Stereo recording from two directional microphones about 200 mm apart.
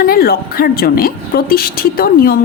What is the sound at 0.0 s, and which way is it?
A woman's voice, 50° left (ahead or behind).